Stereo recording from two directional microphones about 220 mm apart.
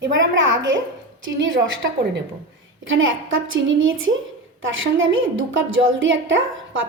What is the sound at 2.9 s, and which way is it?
A woman's voice, 60° right (ahead or behind).